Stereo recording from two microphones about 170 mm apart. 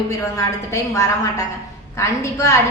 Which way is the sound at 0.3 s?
15° left (ahead or behind).